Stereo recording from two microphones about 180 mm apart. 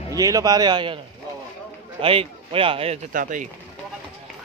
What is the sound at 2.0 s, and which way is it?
A man's voice, 30° right (ahead or behind).